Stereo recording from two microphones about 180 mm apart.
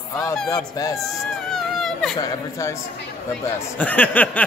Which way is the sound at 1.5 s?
Centre (ahead or behind).